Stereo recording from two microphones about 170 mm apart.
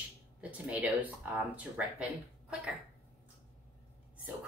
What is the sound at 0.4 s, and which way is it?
Speech, 10° right (ahead or behind).